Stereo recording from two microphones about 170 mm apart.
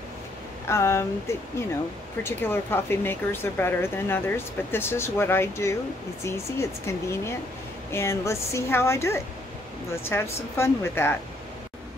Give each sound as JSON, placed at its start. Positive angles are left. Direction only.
{"t": 0.7, "sound": "speech", "side_deg": 15}